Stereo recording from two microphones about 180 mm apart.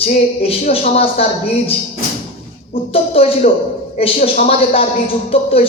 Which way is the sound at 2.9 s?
35° left (ahead or behind).